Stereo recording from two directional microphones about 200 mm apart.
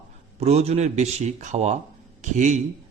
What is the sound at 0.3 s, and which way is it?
Speech, 30° right (ahead or behind).